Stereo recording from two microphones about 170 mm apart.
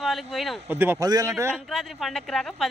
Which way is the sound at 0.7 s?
10° right (ahead or behind).